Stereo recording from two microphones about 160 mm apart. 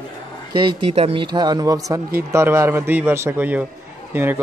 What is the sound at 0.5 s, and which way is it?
A man's voice, 30° right (ahead or behind).